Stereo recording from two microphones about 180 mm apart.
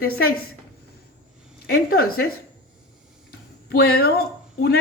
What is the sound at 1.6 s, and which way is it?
Speech, 60° left (ahead or behind).